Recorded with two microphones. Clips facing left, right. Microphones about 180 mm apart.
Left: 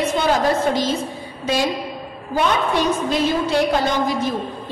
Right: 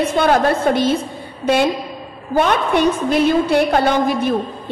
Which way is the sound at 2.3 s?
55° right (ahead or behind).